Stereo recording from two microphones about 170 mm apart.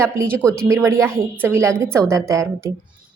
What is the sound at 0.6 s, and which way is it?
A woman's voice, 15° right (ahead or behind).